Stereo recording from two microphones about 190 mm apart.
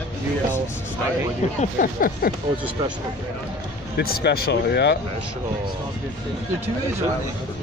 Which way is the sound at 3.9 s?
55° left (ahead or behind).